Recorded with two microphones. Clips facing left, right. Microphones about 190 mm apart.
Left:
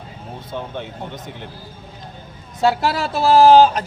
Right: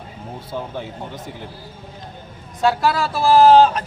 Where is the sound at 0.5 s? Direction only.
5° right (ahead or behind).